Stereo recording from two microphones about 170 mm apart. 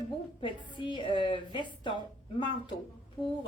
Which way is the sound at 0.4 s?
25° left (ahead or behind).